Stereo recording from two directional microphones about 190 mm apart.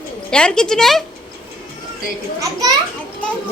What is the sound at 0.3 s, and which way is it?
Speech, 5° left (ahead or behind).